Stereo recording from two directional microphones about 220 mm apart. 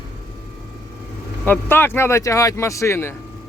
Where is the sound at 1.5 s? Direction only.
10° left (ahead or behind).